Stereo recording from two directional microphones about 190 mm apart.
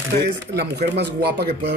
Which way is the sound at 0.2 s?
60° right (ahead or behind).